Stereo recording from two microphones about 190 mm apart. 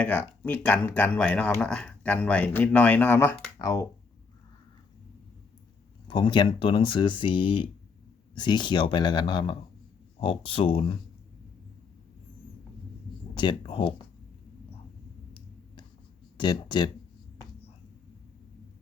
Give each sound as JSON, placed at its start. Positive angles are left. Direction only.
{"t": 0.0, "sound": "speech", "side_deg": 10}
{"t": 6.1, "sound": "speech", "side_deg": 25}
{"t": 13.3, "sound": "speech", "side_deg": 25}
{"t": 16.4, "sound": "speech", "side_deg": 25}